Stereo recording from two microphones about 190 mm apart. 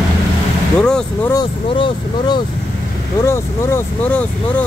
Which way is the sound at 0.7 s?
5° left (ahead or behind).